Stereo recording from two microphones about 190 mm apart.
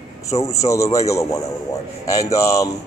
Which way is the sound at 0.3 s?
15° left (ahead or behind).